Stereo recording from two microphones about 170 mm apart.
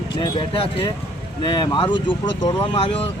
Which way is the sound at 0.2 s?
30° left (ahead or behind).